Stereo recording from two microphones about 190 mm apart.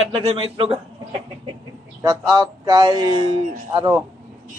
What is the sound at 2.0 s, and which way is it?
A man's voice, 20° right (ahead or behind).